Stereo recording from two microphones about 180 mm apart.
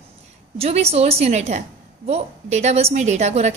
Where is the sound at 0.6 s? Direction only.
35° right (ahead or behind).